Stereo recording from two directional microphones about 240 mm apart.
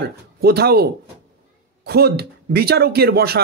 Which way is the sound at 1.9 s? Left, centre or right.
Right.